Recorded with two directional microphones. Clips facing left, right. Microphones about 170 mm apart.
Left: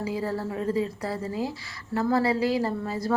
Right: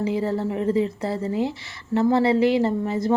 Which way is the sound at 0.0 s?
25° right (ahead or behind).